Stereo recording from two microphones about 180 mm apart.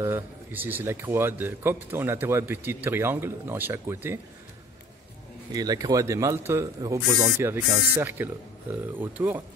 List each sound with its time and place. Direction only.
0.0 s a man's voice: 10° right (ahead or behind)
5.5 s a man's voice: 20° right (ahead or behind)